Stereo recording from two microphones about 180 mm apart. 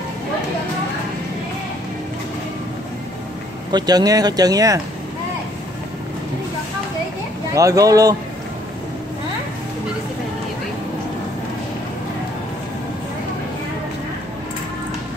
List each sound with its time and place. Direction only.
3.7 s speech: 20° right (ahead or behind)
7.5 s speech: 20° right (ahead or behind)